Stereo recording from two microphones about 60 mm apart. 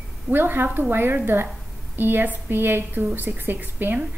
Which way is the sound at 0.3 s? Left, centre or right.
Right.